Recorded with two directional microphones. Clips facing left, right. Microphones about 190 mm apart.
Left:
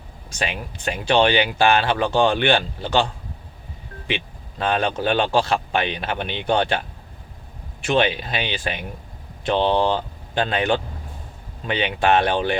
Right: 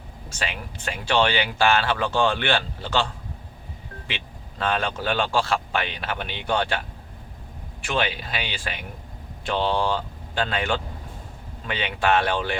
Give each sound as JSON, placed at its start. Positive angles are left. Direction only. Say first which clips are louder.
{"t": 0.3, "sound": "speech", "louder": "left 4 dB", "side_deg": 20}